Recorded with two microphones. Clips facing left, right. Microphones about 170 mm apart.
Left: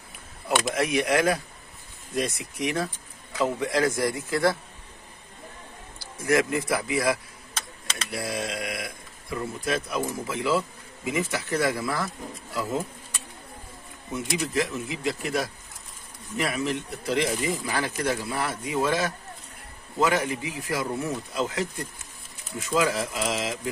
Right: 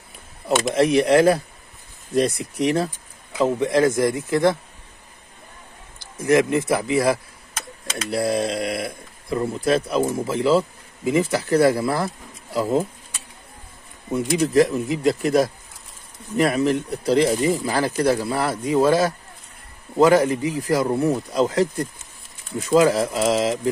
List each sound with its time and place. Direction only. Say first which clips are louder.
0.7 s speech: right 10 dB; 30° right (ahead or behind)
3.3 s speech: right 6 dB; 20° right (ahead or behind)
5.9 s a man's voice: right 6 dB; 20° right (ahead or behind)
14.1 s speech: right 10 dB; 40° right (ahead or behind)